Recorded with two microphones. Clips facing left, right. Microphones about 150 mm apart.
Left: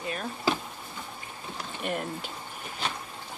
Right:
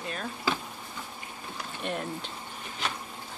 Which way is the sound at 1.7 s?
5° left (ahead or behind).